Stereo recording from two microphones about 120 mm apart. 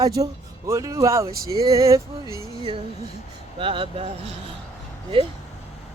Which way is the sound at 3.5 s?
45° right (ahead or behind).